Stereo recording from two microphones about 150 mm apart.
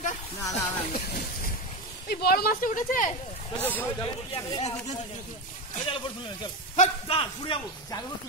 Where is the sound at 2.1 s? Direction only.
90° left; by 3.1 s 60° left (ahead or behind).